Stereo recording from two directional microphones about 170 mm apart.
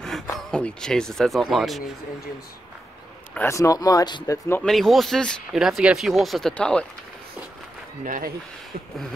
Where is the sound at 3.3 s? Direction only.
15° left (ahead or behind).